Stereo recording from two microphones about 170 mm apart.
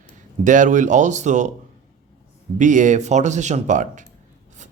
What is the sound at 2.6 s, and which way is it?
Speech, 45° right (ahead or behind).